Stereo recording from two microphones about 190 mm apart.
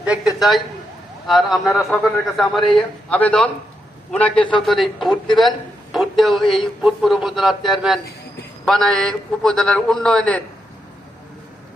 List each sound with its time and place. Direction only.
0.0 s a man's voice: 5° right (ahead or behind)